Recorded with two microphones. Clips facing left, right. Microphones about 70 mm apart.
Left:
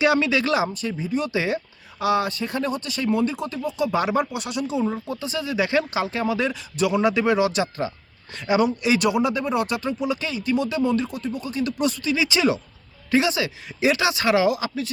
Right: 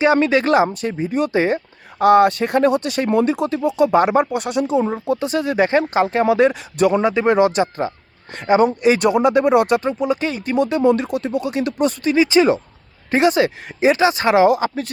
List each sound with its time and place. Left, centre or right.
0.0 s speech: right
11.8 s speech: right